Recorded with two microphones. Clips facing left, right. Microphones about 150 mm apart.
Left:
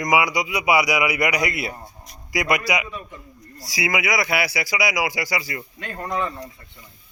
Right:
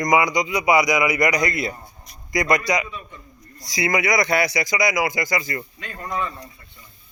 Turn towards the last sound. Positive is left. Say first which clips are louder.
# left 4 dB
turn(degrees=45)  # may be behind; listen again after turning